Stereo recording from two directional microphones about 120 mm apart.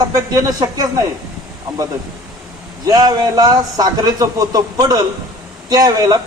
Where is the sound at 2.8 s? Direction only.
35° right (ahead or behind).